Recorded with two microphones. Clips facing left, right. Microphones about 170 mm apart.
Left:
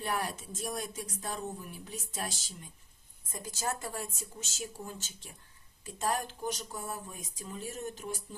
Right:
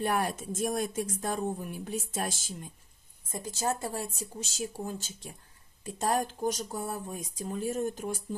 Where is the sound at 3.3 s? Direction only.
25° right (ahead or behind).